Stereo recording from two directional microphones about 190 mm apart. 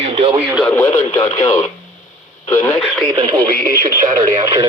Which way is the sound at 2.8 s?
5° left (ahead or behind).